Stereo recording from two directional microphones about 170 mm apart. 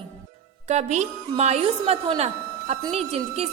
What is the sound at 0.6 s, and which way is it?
A woman's voice, 40° right (ahead or behind).